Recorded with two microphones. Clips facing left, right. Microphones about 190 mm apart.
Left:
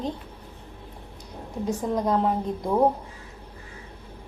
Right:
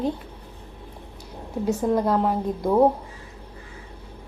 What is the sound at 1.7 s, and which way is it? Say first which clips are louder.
Speech: right 4 dB; 5° right (ahead or behind).